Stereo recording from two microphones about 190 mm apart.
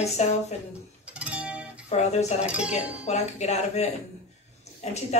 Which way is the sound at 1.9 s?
35° left (ahead or behind).